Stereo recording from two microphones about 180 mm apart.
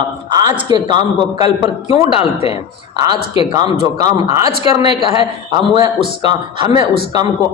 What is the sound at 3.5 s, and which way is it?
A man's voice, 20° right (ahead or behind).